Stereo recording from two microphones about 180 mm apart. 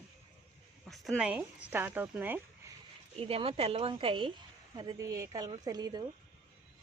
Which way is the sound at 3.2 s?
35° right (ahead or behind).